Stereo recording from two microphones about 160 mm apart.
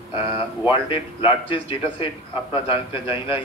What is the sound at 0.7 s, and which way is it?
Speech, 30° left (ahead or behind).